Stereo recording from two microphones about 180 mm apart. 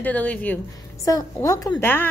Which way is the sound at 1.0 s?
20° left (ahead or behind).